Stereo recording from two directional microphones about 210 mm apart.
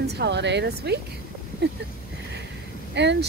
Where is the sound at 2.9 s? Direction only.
55° right (ahead or behind).